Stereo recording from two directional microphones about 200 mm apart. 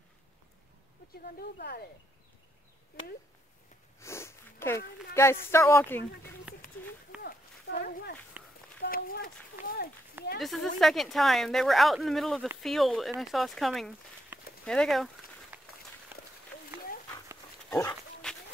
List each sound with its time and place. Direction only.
1.1 s speech: 50° left (ahead or behind)
4.0 s sniff: 15° left (ahead or behind)
5.1 s speech: 15° left (ahead or behind)
7.2 s a sound: 50° left (ahead or behind)
8.8 s speech: 45° left (ahead or behind)
10.4 s speech: centre (ahead or behind)
15.5 s run: 10° right (ahead or behind)
17.6 s speech: 15° left (ahead or behind)
18.2 s run: 5° left (ahead or behind)